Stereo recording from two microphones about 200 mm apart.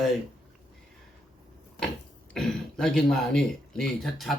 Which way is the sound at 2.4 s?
Centre (ahead or behind).